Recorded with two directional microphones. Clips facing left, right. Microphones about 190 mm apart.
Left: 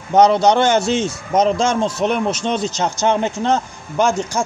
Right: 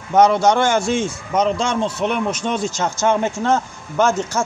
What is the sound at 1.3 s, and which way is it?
A man's voice, 45° left (ahead or behind).